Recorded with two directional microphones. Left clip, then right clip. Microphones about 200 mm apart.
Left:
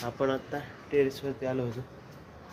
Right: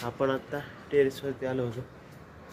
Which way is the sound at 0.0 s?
5° right (ahead or behind).